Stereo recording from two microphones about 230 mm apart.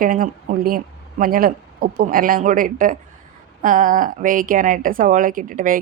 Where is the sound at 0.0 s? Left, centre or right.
Right.